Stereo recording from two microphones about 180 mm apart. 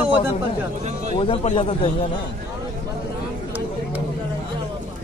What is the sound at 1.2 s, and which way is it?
Speech, 30° left (ahead or behind).